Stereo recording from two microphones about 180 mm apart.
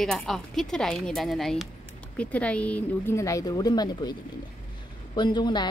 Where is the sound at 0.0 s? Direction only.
Centre (ahead or behind).